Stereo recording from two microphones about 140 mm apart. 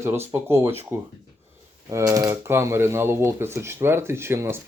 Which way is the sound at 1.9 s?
25° right (ahead or behind).